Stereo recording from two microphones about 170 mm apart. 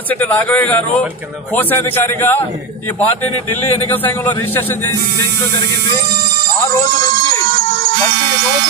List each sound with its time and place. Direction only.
0.2 s a man's voice: 10° left (ahead or behind)
3.9 s a man's voice: 10° left (ahead or behind)
7.5 s music: 60° right (ahead or behind)